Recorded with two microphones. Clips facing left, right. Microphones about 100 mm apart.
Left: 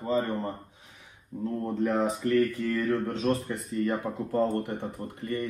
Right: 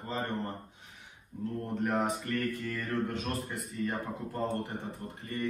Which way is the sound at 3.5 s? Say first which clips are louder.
Left 6 dB; 80° left.